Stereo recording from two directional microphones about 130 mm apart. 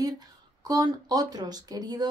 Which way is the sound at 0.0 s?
30° right (ahead or behind).